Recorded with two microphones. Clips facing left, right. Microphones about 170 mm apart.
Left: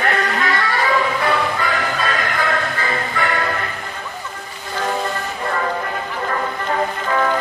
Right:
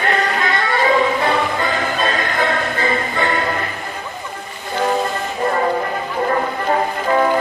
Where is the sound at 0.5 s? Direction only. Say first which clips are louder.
Right 5 dB; 25° right (ahead or behind).